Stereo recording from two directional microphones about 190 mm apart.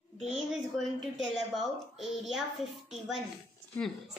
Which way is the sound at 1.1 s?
Centre (ahead or behind).